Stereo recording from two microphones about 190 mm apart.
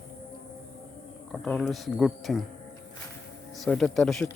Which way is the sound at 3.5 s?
5° left (ahead or behind).